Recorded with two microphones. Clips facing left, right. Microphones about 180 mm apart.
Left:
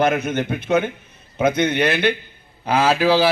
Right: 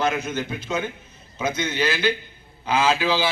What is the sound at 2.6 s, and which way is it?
Speech, 35° left (ahead or behind).